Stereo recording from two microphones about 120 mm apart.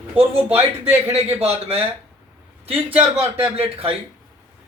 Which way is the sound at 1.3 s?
60° right (ahead or behind).